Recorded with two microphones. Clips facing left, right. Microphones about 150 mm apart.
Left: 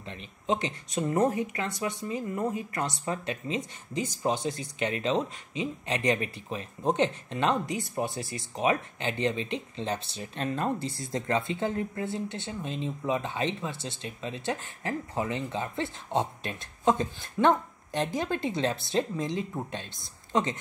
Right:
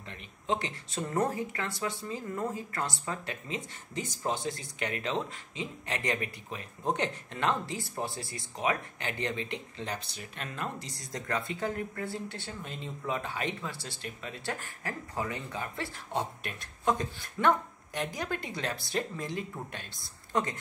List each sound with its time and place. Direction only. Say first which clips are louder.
0.0 s speech: left 5 dB; 20° left (ahead or behind)